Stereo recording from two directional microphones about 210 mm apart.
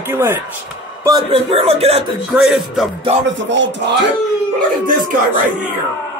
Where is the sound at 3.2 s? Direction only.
60° right (ahead or behind).